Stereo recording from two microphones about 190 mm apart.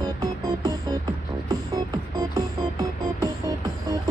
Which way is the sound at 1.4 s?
15° right (ahead or behind).